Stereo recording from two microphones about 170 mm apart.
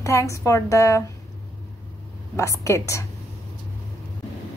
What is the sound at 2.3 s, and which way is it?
Speech, 15° left (ahead or behind).